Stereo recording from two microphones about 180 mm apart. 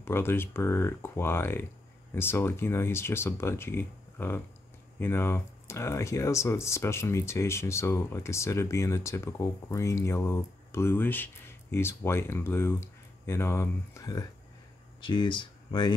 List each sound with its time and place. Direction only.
0.0 s speech: 10° left (ahead or behind)